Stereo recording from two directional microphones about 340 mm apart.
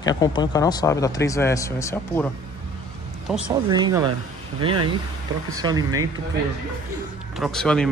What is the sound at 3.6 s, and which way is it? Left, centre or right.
Speech, centre.